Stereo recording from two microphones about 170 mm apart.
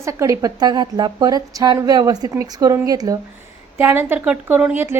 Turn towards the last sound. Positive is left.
turn(degrees=-10)  # may be behind; listen again after turning